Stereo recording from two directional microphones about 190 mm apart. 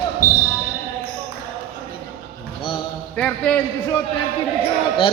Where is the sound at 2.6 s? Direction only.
25° left (ahead or behind).